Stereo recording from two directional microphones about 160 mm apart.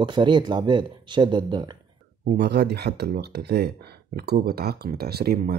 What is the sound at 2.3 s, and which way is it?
Speech, 90° right.